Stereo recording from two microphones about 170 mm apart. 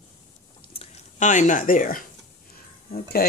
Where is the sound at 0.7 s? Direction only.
40° left (ahead or behind); by 3.2 s 60° left (ahead or behind).